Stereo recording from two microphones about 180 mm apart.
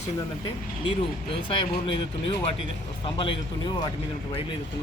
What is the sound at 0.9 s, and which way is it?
Speech, 30° left (ahead or behind).